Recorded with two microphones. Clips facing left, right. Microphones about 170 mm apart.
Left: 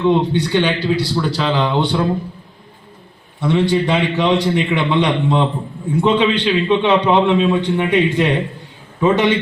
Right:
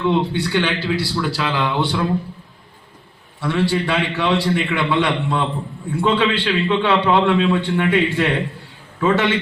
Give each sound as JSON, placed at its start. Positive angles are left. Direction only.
{"t": 0.0, "sound": "a man's voice", "side_deg": 20}
{"t": 3.4, "sound": "a man's voice", "side_deg": 20}